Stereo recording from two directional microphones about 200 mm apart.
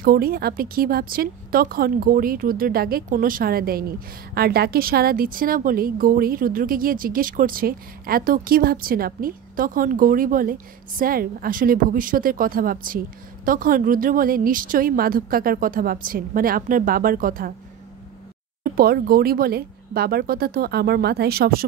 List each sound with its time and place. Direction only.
0.0 s speech: 50° right (ahead or behind)
18.6 s speech: 50° right (ahead or behind)